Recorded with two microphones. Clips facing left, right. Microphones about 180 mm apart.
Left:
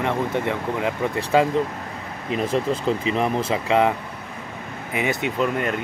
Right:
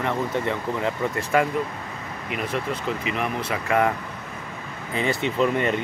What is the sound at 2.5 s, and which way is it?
Speech, 30° left (ahead or behind).